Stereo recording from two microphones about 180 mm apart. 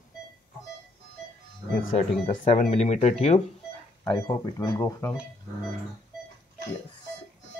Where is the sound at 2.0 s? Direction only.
40° left (ahead or behind).